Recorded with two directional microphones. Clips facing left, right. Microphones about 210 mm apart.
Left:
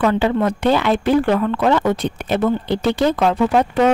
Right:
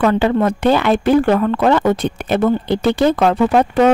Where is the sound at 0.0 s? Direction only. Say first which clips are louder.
Right 2 dB; 50° right (ahead or behind).